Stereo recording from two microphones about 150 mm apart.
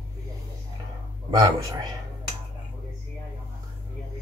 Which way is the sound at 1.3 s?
25° right (ahead or behind).